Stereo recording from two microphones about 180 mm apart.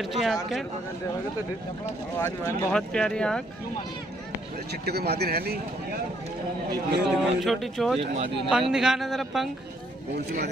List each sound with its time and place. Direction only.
0.0 s speech: centre (ahead or behind)
2.1 s speech: 15° left (ahead or behind)
4.8 s a man's voice: 65° right (ahead or behind)
7.1 s speech: centre (ahead or behind)
10.1 s a man's voice: 65° right (ahead or behind)